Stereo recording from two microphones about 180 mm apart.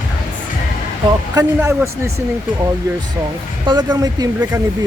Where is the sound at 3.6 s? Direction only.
25° right (ahead or behind).